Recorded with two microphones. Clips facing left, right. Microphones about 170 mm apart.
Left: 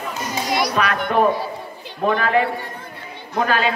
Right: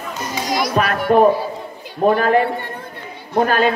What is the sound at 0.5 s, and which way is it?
Children playing, centre (ahead or behind).